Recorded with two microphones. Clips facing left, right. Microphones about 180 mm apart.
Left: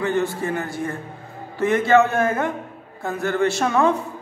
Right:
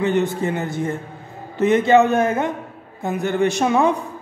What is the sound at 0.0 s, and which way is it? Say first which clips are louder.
A man's voice: right 3 dB; 20° right (ahead or behind).